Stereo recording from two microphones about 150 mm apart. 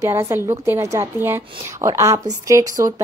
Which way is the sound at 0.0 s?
20° right (ahead or behind).